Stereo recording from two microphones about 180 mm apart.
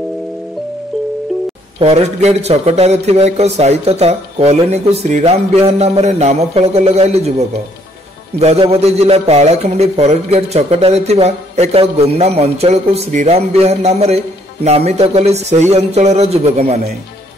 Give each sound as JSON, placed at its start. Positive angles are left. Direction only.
{"t": 1.8, "sound": "a man's voice", "side_deg": -35}